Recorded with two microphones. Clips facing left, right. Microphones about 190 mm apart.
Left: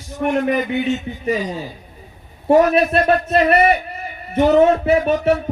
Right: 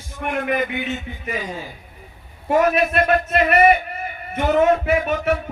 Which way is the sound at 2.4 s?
30° left (ahead or behind).